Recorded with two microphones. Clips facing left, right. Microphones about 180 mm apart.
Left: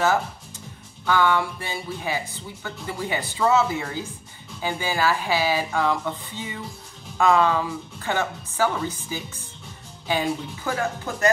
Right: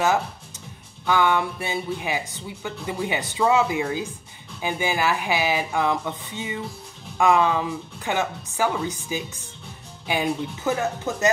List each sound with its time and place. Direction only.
1.0 s speech: 15° right (ahead or behind)